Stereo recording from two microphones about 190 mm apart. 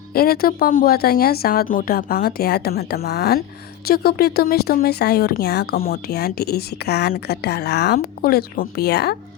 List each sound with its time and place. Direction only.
0.1 s speech: 50° left (ahead or behind)